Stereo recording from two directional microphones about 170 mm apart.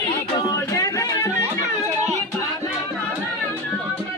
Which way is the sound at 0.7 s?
20° left (ahead or behind).